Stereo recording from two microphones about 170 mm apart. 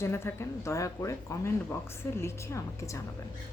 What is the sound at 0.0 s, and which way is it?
A woman's voice, 15° left (ahead or behind).